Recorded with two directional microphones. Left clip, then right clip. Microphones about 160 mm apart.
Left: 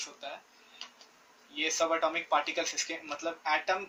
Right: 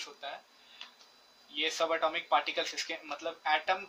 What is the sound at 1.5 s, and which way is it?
Speech, 40° right (ahead or behind).